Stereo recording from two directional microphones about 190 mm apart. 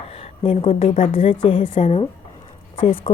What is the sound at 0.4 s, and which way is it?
A woman's voice, 30° left (ahead or behind).